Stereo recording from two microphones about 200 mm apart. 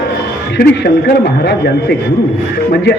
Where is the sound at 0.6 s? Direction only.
50° left (ahead or behind).